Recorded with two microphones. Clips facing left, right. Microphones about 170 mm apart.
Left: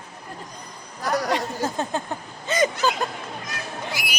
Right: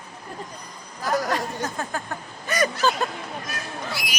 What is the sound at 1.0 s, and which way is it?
Speech, centre (ahead or behind).